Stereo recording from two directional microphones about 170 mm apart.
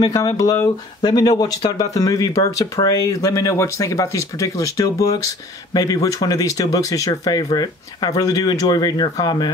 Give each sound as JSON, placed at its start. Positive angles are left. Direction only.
{"t": 0.0, "sound": "speech", "side_deg": 20}